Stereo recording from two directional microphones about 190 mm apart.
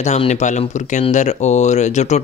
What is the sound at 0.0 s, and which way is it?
Speech, 35° left (ahead or behind).